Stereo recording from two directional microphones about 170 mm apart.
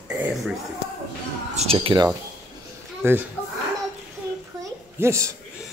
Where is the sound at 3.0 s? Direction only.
15° right (ahead or behind).